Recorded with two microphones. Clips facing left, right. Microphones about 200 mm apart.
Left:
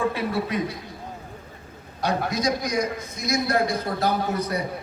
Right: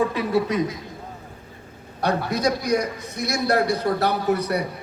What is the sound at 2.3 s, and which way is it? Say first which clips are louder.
A man's voice: right 3 dB; 65° right (ahead or behind).